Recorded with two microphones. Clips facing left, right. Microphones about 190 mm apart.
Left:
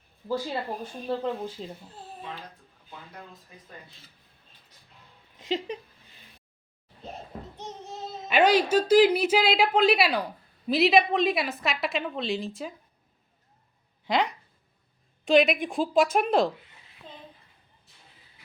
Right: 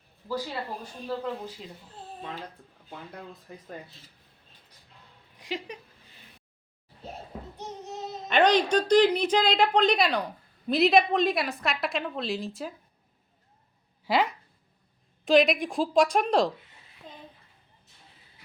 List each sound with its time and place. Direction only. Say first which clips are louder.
1.2 s speech: left 3 dB; 30° left (ahead or behind)
5.4 s speech: left 5 dB; 25° left (ahead or behind)
8.3 s a woman's voice: left 1 dB; 5° left (ahead or behind)
14.1 s a woman's voice: right 1 dB; 5° right (ahead or behind)